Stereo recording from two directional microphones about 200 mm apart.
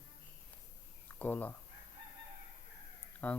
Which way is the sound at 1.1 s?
10° left (ahead or behind).